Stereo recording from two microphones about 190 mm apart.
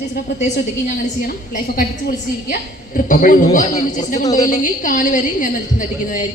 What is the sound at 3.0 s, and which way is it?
A woman's voice, 45° left (ahead or behind).